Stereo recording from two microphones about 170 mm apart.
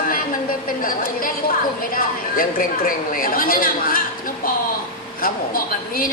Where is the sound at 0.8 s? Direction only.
55° left (ahead or behind).